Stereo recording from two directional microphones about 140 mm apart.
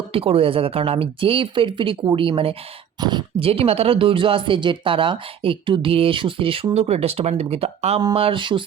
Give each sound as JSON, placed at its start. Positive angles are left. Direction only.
{"t": 0.1, "sound": "speech", "side_deg": -40}